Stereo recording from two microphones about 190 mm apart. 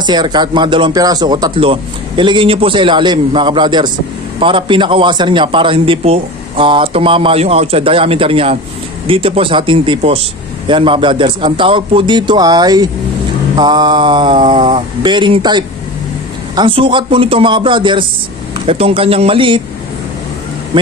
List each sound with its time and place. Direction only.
0.0 s a man's voice: 20° right (ahead or behind)
20.7 s speech: 25° right (ahead or behind)